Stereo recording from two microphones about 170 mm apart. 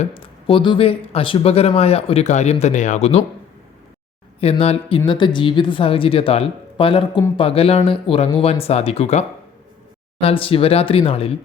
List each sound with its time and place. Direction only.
0.0 s speech: 30° left (ahead or behind)
4.4 s speech: 35° left (ahead or behind)